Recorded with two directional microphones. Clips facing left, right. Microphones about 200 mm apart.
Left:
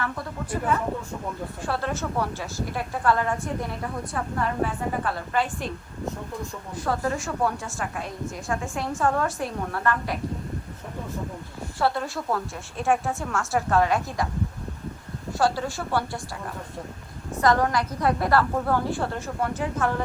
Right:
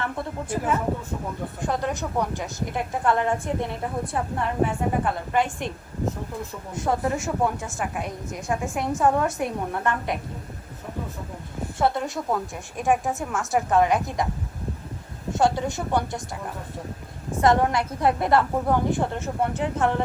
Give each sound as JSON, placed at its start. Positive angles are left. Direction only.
{"t": 1.6, "sound": "a woman's voice", "side_deg": -15}
{"t": 4.6, "sound": "a woman's voice", "side_deg": -15}
{"t": 6.7, "sound": "a woman's voice", "side_deg": -20}
{"t": 11.8, "sound": "a woman's voice", "side_deg": -20}
{"t": 15.3, "sound": "a woman's voice", "side_deg": -20}
{"t": 17.4, "sound": "a woman's voice", "side_deg": -25}